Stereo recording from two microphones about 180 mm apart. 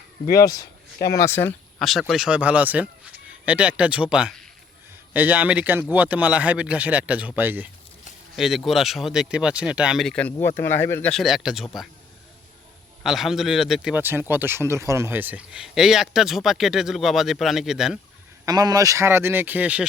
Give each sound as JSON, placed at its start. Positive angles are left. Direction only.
{"t": 0.4, "sound": "speech", "side_deg": 20}
{"t": 1.8, "sound": "speech", "side_deg": 0}
{"t": 11.1, "sound": "speech", "side_deg": 0}
{"t": 13.0, "sound": "speech", "side_deg": 0}
{"t": 18.4, "sound": "speech", "side_deg": -20}